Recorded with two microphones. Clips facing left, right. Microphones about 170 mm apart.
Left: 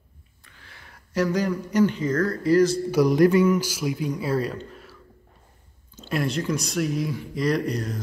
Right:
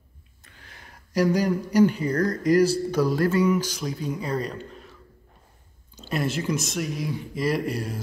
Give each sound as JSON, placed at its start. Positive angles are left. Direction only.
{"t": 0.6, "sound": "a sound", "side_deg": -45}
{"t": 1.5, "sound": "speech", "side_deg": -35}
{"t": 2.4, "sound": "a man's voice", "side_deg": -15}
{"t": 2.9, "sound": "speech", "side_deg": 15}
{"t": 6.0, "sound": "speech", "side_deg": 0}